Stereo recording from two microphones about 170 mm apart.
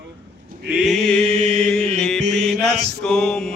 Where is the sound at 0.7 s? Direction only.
Centre (ahead or behind).